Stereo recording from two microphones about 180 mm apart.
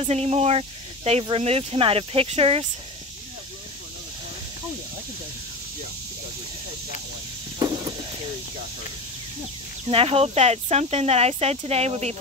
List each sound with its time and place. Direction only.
0.0 s speech: 35° right (ahead or behind)
7.5 s a sound: 25° right (ahead or behind)
9.8 s speech: 30° right (ahead or behind)